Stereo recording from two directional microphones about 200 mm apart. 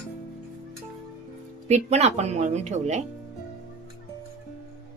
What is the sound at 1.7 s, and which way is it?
Speech, 35° right (ahead or behind).